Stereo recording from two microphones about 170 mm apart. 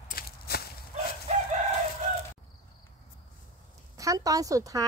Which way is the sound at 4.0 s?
20° right (ahead or behind).